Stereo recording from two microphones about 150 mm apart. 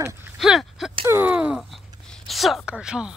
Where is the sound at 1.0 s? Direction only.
15° right (ahead or behind).